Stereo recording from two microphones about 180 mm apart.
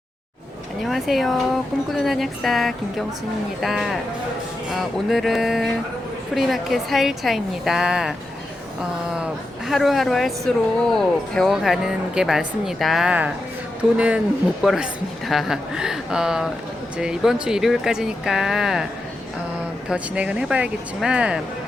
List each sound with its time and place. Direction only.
0.8 s speech: centre (ahead or behind)
9.2 s speech: centre (ahead or behind)
19.9 s speech: 5° right (ahead or behind)